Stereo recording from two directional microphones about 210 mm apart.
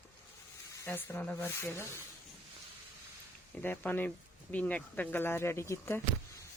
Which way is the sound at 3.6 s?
10° left (ahead or behind).